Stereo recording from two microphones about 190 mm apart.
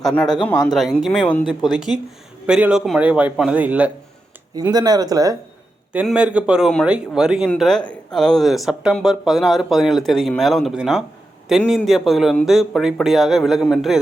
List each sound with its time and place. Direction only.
0.0 s speech: 5° left (ahead or behind)
2.5 s a man's voice: 5° right (ahead or behind)
4.5 s speech: 20° right (ahead or behind)
5.9 s speech: 5° right (ahead or behind)